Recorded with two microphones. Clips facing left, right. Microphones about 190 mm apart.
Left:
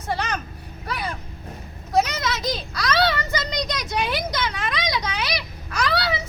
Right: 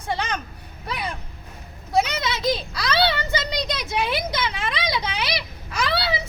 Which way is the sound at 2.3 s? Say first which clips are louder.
Right 3 dB; 30° right (ahead or behind).